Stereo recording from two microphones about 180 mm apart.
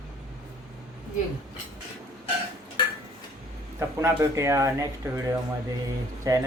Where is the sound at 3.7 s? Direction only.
15° right (ahead or behind).